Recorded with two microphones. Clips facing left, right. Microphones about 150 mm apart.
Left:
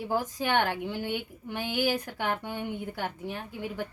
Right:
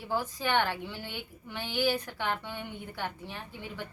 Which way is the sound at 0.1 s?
50° left (ahead or behind).